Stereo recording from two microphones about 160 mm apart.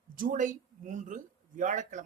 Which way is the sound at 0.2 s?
55° right (ahead or behind).